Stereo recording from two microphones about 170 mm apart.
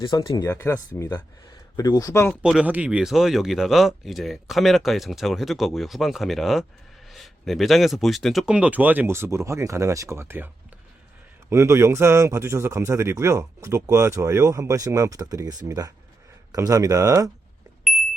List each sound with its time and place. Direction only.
0.0 s speech: 20° left (ahead or behind)
2.4 s a man's voice: 5° right (ahead or behind)